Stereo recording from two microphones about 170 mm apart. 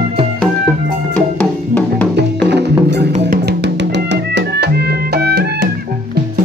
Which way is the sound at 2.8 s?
75° right (ahead or behind).